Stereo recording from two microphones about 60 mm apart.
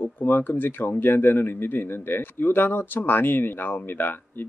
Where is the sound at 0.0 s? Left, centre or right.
Left.